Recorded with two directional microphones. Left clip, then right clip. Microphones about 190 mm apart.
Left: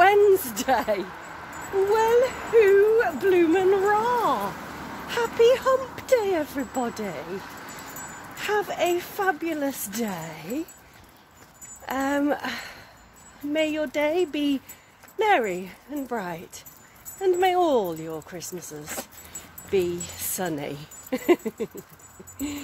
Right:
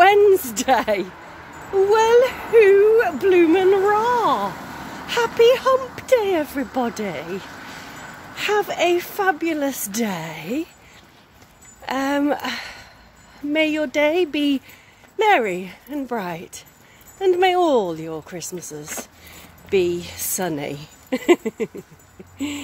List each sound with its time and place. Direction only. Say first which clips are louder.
0.0 s a sound: right 4 dB; 20° right (ahead or behind)
1.9 s speech: right 5 dB; 25° right (ahead or behind)
8.4 s speech: right 5 dB; 25° right (ahead or behind)
11.8 s speech: right 4 dB; 15° right (ahead or behind)